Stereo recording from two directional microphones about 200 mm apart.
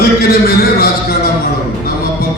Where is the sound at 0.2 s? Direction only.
50° left (ahead or behind).